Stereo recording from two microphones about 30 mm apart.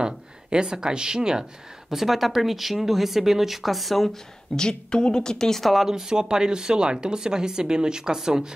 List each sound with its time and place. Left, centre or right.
0.0 s speech: right
1.9 s speech: centre
4.6 s a woman's voice: left
5.6 s speech: centre
5.9 s speech: centre